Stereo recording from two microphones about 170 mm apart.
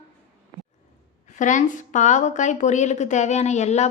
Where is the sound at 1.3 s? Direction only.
45° left (ahead or behind).